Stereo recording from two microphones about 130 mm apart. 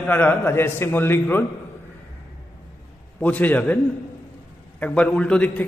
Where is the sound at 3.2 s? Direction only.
10° left (ahead or behind).